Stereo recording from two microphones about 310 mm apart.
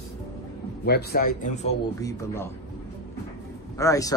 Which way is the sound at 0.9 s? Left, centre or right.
Left.